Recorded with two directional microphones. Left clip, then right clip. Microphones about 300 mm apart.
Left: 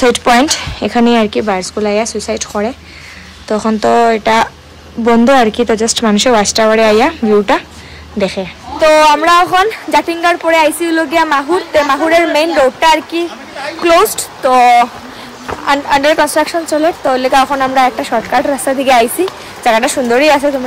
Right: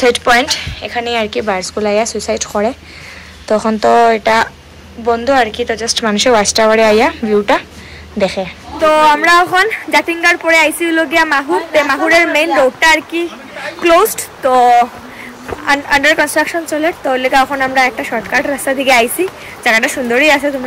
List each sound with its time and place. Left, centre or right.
0.0 s a woman's voice: centre